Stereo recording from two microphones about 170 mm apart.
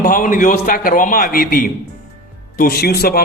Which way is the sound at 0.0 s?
55° left (ahead or behind).